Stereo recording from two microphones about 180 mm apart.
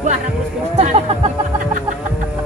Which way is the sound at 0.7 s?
30° right (ahead or behind).